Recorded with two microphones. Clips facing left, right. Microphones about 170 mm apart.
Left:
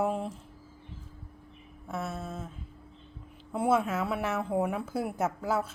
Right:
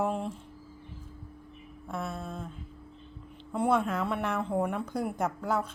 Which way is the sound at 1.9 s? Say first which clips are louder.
Even; 5° left (ahead or behind).